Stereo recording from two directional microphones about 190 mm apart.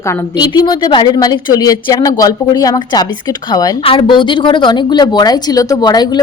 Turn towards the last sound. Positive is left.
turn(degrees=20)  # may be behind; listen again after turning